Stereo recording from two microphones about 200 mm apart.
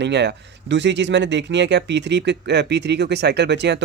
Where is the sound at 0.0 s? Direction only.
60° right (ahead or behind).